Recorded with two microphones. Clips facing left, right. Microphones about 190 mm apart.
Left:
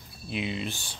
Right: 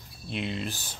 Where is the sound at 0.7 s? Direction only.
40° right (ahead or behind).